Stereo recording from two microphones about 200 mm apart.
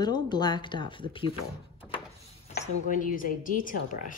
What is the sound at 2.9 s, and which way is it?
Speech, 45° left (ahead or behind).